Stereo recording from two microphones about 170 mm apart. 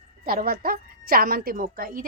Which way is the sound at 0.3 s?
60° right (ahead or behind).